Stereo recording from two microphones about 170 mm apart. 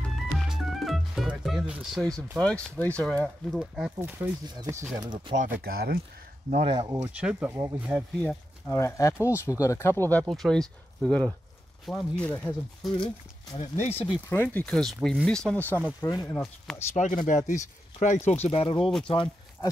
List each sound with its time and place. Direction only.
0.1 s music: centre (ahead or behind)
2.3 s speech: 5° left (ahead or behind)
4.6 s speech: 15° right (ahead or behind)
5.3 s speech: 50° right (ahead or behind)
6.5 s speech: 30° right (ahead or behind)
7.0 s speech: 5° right (ahead or behind)
8.6 s speech: 15° left (ahead or behind)
10.2 s speech: centre (ahead or behind)
12.9 s speech: 30° left (ahead or behind)
14.3 s speech: 15° left (ahead or behind)
14.7 s speech: 5° left (ahead or behind); by 16.4 s 20° left (ahead or behind)
16.9 s speech: 45° left (ahead or behind)
18.8 s speech: 5° left (ahead or behind)
19.0 s speech: 30° left (ahead or behind)